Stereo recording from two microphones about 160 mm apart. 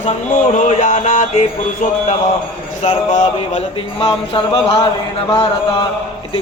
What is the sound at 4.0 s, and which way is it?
Speech, 35° left (ahead or behind).